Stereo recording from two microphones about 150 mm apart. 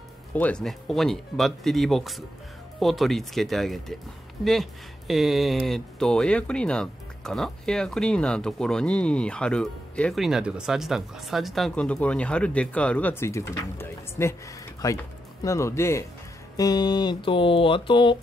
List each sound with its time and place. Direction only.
0.3 s speech: 10° left (ahead or behind); by 18.1 s 35° left (ahead or behind)